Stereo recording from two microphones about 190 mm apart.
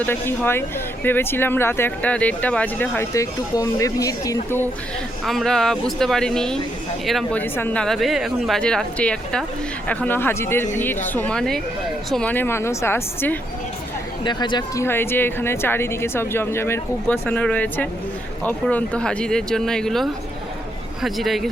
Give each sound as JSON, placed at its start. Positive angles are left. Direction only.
{"t": 0.0, "sound": "speech", "side_deg": 10}
{"t": 5.2, "sound": "speech", "side_deg": 0}
{"t": 14.3, "sound": "speech", "side_deg": 25}
{"t": 14.8, "sound": "speech", "side_deg": 10}